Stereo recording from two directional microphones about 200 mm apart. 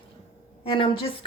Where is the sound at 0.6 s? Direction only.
25° left (ahead or behind).